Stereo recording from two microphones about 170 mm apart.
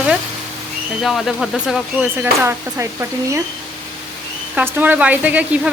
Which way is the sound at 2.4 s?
15° right (ahead or behind).